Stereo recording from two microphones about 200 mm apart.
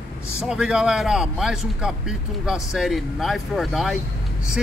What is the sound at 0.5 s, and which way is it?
Speech, 5° right (ahead or behind).